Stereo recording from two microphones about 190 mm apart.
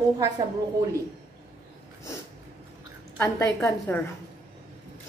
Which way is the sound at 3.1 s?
15° left (ahead or behind).